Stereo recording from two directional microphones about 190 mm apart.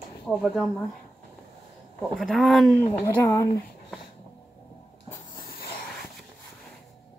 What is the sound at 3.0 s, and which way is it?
Speech, 15° left (ahead or behind).